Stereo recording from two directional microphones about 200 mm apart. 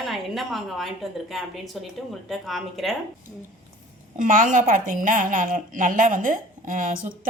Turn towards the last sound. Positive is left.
turn(degrees=-45)  # may be behind; listen again after turning